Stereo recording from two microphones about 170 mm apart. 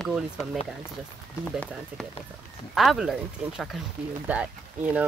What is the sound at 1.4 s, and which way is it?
Speech, 10° left (ahead or behind).